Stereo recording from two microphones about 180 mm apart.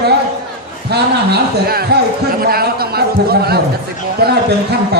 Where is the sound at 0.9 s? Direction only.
60° right (ahead or behind).